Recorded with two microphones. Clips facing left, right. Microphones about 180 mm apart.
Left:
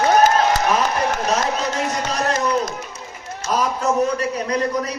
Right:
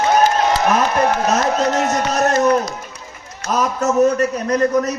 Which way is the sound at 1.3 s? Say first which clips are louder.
Right 4 dB; 50° right (ahead or behind).